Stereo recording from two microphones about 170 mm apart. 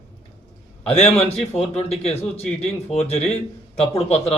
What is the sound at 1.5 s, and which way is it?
A man's voice, 40° left (ahead or behind).